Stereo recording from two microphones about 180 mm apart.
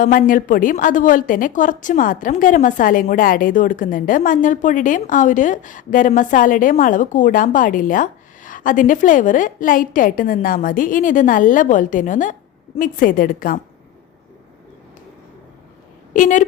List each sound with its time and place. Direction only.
0.0 s a woman's voice: 50° left (ahead or behind)
16.1 s a woman's voice: 45° left (ahead or behind)